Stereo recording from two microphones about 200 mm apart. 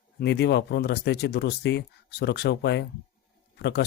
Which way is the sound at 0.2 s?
55° left (ahead or behind).